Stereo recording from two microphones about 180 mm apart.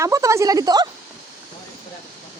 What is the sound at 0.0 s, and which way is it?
Speech, 15° right (ahead or behind).